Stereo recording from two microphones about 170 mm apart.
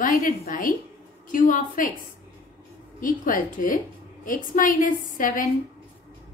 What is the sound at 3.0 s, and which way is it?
A woman's voice, 50° left (ahead or behind).